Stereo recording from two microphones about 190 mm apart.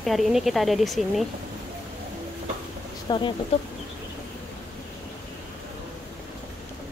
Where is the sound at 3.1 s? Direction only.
25° left (ahead or behind).